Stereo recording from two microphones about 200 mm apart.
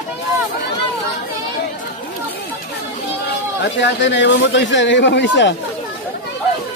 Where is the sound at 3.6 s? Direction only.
60° left (ahead or behind).